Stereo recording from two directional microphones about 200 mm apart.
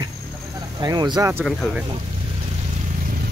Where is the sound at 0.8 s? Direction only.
20° right (ahead or behind).